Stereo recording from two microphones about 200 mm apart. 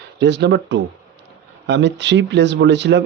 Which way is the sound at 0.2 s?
60° right (ahead or behind).